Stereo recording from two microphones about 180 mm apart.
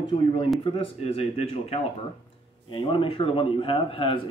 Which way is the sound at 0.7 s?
30° left (ahead or behind).